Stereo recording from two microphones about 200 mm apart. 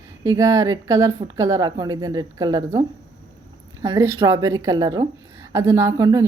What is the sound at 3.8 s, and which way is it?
A woman's voice, 15° right (ahead or behind).